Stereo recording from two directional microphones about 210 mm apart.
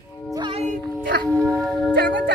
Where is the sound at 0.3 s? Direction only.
25° right (ahead or behind).